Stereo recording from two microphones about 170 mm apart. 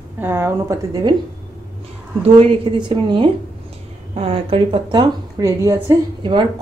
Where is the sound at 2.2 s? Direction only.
35° right (ahead or behind).